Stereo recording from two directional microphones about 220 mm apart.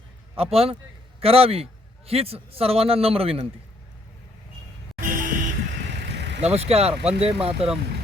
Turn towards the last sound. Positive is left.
turn(degrees=-25)  # may be behind; listen again after turning